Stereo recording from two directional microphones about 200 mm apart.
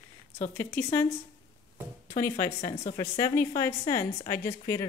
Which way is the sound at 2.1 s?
15° left (ahead or behind).